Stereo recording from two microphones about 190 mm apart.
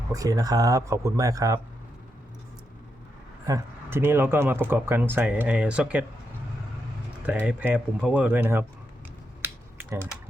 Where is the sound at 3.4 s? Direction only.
15° right (ahead or behind).